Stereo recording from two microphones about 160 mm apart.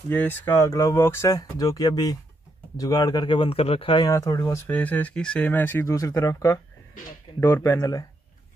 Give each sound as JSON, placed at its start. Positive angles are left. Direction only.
{"t": 0.1, "sound": "speech", "side_deg": 10}